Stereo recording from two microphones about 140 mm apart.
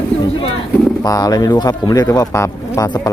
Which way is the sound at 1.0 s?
25° left (ahead or behind).